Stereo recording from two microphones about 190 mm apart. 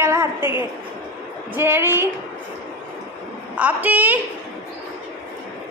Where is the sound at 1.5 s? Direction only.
10° right (ahead or behind).